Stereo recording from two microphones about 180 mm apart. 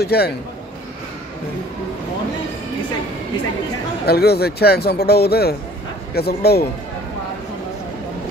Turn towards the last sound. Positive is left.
turn(degrees=60)  # may be behind; listen again after turning